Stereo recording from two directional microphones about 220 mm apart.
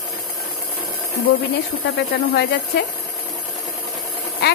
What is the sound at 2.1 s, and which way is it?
Speech, 50° left (ahead or behind).